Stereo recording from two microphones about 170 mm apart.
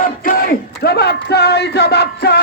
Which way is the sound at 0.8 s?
70° left (ahead or behind).